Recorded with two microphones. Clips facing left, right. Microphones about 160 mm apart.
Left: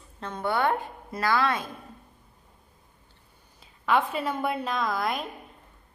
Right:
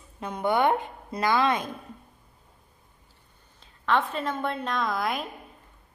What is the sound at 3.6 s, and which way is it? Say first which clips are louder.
A woman's voice: left 1 dB; 10° left (ahead or behind).